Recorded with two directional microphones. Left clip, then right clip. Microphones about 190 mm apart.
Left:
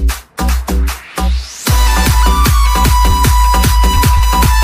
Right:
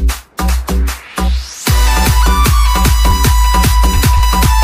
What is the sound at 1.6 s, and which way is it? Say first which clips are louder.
Music: even; centre (ahead or behind).